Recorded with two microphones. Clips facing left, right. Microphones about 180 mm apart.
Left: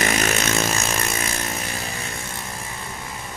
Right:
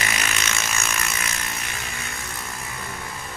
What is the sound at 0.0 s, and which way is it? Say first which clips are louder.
Vehicle: left 7 dB; 45° left (ahead or behind).